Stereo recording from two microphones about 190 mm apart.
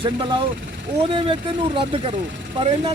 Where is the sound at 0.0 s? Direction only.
25° right (ahead or behind).